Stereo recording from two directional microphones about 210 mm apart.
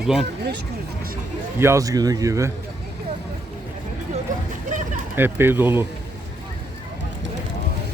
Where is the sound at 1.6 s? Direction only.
15° right (ahead or behind).